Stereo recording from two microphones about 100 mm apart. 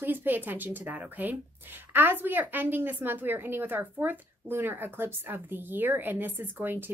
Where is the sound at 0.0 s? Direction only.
20° right (ahead or behind).